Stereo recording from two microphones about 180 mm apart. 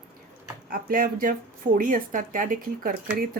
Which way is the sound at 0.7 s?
55° right (ahead or behind).